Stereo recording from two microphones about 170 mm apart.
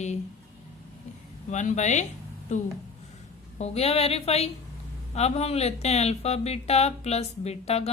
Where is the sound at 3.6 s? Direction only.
35° left (ahead or behind).